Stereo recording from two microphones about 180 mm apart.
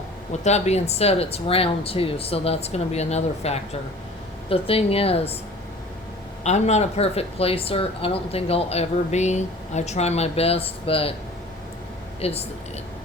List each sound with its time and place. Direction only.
0.4 s speech: 40° left (ahead or behind)
6.4 s speech: 40° left (ahead or behind)
12.2 s speech: 35° left (ahead or behind)